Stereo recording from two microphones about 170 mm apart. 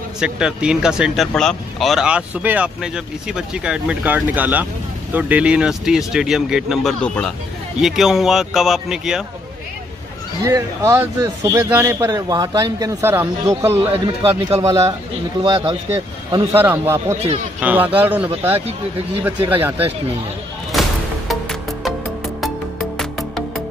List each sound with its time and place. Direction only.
0.2 s speech: 5° right (ahead or behind)
10.4 s a man's voice: 20° right (ahead or behind)
21.3 s music: centre (ahead or behind)
22.9 s music: centre (ahead or behind)